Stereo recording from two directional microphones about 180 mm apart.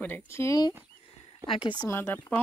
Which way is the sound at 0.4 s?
20° left (ahead or behind).